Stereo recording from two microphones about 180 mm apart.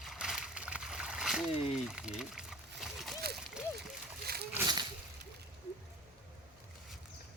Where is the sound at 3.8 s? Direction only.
60° right (ahead or behind).